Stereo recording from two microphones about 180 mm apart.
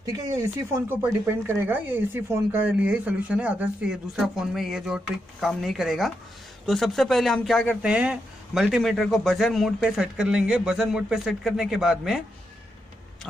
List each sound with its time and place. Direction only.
0.1 s speech: 15° right (ahead or behind); by 12.2 s centre (ahead or behind)